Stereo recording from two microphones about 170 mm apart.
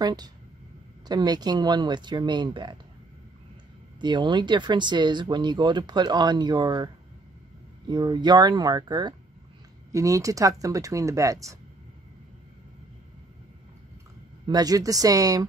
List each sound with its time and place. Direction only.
0.0 s speech: 25° right (ahead or behind)
4.0 s speech: 25° right (ahead or behind)
7.9 s speech: 25° right (ahead or behind)
14.4 s speech: 25° right (ahead or behind)